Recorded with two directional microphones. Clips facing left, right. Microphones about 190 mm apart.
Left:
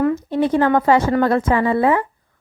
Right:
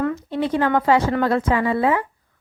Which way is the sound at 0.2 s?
45° left (ahead or behind).